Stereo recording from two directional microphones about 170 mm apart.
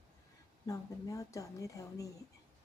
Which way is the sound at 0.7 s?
20° left (ahead or behind).